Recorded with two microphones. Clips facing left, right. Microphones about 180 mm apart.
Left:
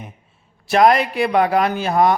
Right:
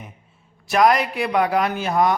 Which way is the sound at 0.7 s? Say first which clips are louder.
Left 3 dB; 25° left (ahead or behind).